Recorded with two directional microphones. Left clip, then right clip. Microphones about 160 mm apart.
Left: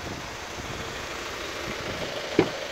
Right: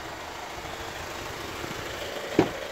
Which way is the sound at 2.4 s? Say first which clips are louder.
Even; 55° right (ahead or behind).